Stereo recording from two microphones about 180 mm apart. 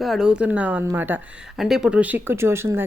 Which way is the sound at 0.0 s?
Centre (ahead or behind).